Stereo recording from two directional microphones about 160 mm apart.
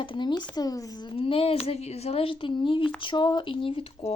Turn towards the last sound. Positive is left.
turn(degrees=35)  # may be behind; listen again after turning